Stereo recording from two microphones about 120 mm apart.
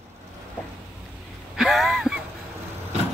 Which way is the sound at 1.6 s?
Centre (ahead or behind).